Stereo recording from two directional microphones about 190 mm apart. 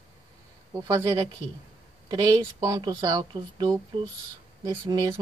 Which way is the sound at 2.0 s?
20° right (ahead or behind).